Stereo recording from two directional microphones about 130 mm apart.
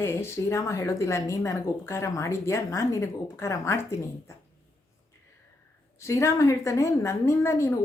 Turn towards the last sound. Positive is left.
turn(degrees=25)  # may be behind; listen again after turning